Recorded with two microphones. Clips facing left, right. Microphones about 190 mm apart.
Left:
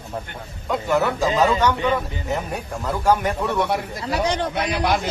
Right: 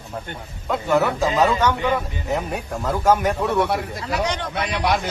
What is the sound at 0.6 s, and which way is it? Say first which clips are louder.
A man's voice: right 1 dB; centre (ahead or behind).